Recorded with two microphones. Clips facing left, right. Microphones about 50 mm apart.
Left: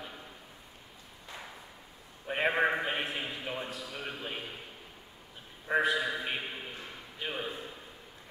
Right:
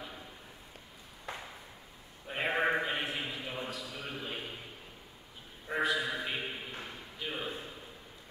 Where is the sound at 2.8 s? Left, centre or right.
Centre.